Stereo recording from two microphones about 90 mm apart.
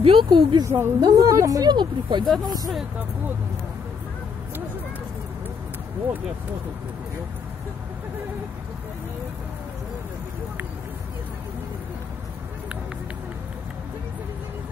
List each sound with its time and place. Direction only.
0.0 s speech: 70° right (ahead or behind)
0.7 s speech: 30° right (ahead or behind); by 2.2 s 60° right (ahead or behind)
2.4 s speech: 45° right (ahead or behind)